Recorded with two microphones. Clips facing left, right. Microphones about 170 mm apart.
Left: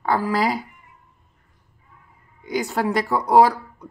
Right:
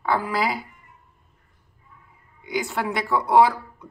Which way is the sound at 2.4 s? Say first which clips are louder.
Left 3 dB; 40° left (ahead or behind).